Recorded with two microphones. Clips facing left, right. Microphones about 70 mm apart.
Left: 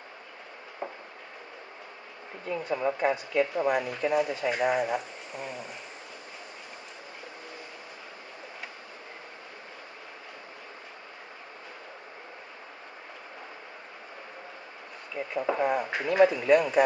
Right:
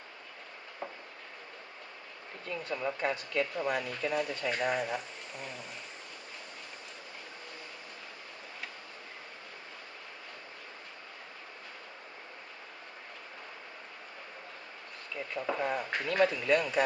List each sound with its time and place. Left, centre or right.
0.8 s a sound: left
2.4 s speech: centre
15.1 s speech: centre